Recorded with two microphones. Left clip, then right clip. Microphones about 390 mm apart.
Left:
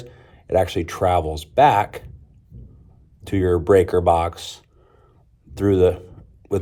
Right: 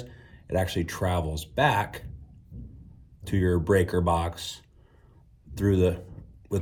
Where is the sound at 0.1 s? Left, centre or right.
Centre.